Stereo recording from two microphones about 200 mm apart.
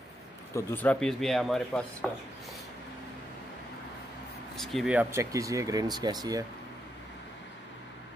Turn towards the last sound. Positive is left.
turn(degrees=-20)  # may be behind; listen again after turning